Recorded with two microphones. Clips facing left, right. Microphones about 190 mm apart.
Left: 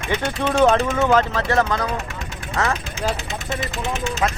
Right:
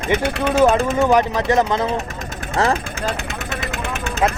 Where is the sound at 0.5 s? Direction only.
10° right (ahead or behind).